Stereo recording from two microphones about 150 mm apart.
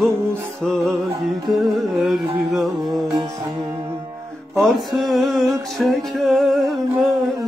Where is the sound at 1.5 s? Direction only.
Centre (ahead or behind).